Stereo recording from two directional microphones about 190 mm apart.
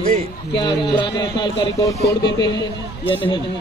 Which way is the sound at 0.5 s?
25° left (ahead or behind).